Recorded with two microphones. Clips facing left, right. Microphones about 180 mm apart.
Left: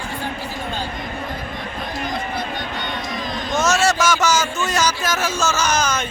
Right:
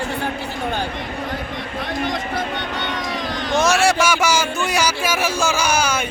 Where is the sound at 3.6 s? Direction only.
10° right (ahead or behind).